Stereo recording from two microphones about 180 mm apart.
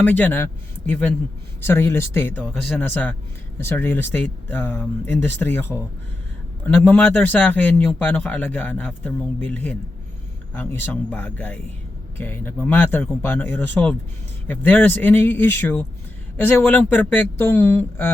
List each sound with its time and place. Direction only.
0.0 s speech: 10° left (ahead or behind)